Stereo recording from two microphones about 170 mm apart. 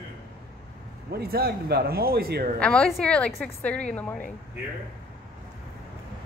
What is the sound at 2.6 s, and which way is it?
A woman's voice, 5° left (ahead or behind).